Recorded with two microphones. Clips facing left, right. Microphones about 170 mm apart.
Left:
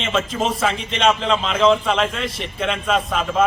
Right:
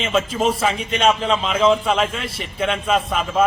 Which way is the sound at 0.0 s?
5° right (ahead or behind).